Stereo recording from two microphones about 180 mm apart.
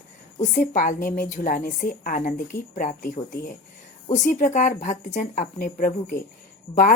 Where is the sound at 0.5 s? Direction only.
45° left (ahead or behind).